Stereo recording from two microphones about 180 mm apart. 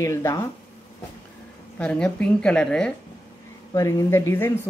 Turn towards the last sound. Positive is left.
turn(degrees=10)  # may be behind; listen again after turning